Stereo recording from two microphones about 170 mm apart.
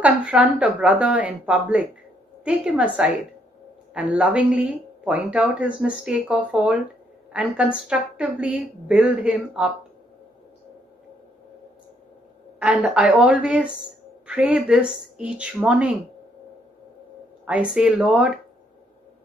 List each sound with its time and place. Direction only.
0.0 s a woman's voice: 5° right (ahead or behind)
12.5 s a woman's voice: 5° right (ahead or behind)
17.5 s a woman's voice: 5° right (ahead or behind)